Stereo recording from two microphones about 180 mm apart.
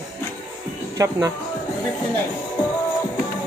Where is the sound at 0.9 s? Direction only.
20° right (ahead or behind).